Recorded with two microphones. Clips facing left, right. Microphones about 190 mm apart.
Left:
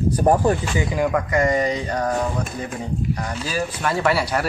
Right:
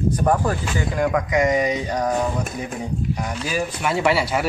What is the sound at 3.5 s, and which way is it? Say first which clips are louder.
Speech: even; 10° right (ahead or behind).